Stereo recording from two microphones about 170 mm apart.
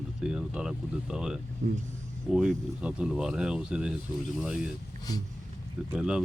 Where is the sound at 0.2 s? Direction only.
5° right (ahead or behind).